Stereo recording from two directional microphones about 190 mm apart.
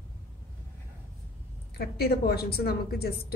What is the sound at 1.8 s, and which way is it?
A woman's voice, 55° left (ahead or behind).